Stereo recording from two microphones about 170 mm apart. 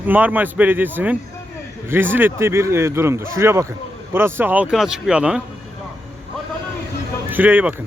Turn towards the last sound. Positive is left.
turn(degrees=-10)  # may be behind; listen again after turning